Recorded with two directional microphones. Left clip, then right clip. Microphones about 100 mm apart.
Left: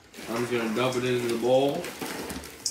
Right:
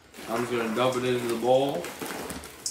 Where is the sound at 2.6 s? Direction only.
15° right (ahead or behind).